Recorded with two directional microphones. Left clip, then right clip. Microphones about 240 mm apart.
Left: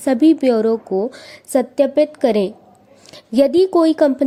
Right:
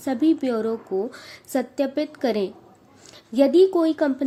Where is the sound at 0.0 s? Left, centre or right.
Left.